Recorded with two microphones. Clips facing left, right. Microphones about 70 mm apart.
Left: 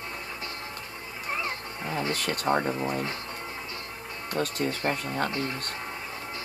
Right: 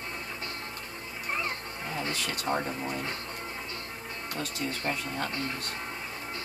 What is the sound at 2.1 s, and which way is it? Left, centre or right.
Speech, left.